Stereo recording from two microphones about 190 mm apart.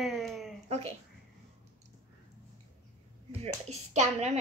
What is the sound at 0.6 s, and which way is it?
Speech, 35° right (ahead or behind).